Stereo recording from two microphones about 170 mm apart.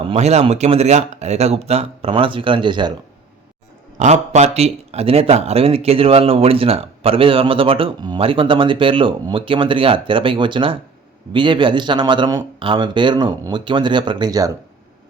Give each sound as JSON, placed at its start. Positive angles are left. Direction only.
{"t": 0.1, "sound": "a man's voice", "side_deg": -40}
{"t": 3.9, "sound": "a man's voice", "side_deg": -45}